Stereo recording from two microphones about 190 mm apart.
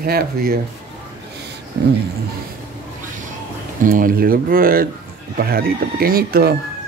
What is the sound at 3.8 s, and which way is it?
Speech, 45° right (ahead or behind).